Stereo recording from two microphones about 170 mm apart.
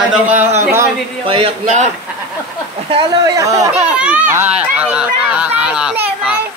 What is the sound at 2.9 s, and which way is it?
Speech, 25° right (ahead or behind).